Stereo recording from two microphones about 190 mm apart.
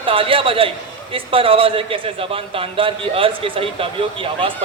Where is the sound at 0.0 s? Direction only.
30° right (ahead or behind).